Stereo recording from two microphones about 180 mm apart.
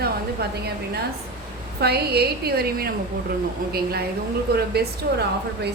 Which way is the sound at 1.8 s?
60° right (ahead or behind).